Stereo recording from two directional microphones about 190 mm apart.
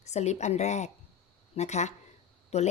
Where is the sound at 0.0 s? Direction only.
35° left (ahead or behind).